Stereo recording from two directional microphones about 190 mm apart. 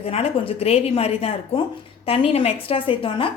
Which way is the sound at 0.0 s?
30° left (ahead or behind).